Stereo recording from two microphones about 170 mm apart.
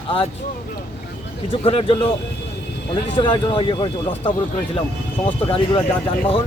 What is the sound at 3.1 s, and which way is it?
Speech, 25° left (ahead or behind).